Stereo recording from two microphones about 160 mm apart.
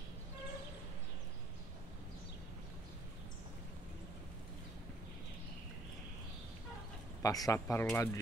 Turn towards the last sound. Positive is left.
turn(degrees=20)  # may be behind; listen again after turning